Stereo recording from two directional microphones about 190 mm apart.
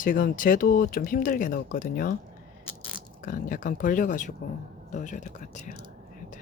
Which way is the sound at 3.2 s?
45° left (ahead or behind).